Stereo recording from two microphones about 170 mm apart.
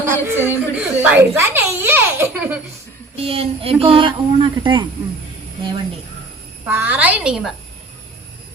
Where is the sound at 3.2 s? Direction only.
35° right (ahead or behind).